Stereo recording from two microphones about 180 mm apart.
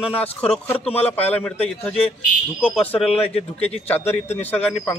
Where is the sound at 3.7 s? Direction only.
10° left (ahead or behind).